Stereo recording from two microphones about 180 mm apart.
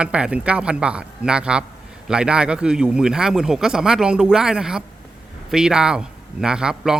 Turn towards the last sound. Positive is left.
turn(degrees=-5)  # may be behind; listen again after turning